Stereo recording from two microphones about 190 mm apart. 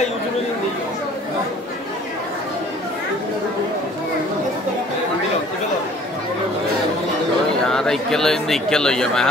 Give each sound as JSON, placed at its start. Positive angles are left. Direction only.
{"t": 7.7, "sound": "speech", "side_deg": 5}